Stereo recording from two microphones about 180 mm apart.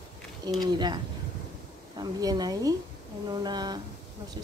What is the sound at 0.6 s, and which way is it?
A woman's voice, 25° right (ahead or behind).